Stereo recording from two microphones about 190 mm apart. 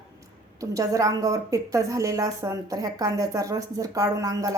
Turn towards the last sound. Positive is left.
turn(degrees=-20)  # may be behind; listen again after turning